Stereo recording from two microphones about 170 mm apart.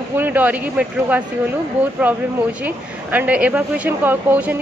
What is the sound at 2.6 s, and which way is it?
Speech, 10° right (ahead or behind).